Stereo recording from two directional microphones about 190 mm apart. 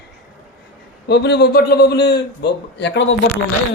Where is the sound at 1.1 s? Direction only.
60° left (ahead or behind).